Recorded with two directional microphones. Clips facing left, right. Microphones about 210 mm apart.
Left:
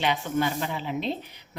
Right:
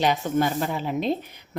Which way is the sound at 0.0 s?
40° right (ahead or behind).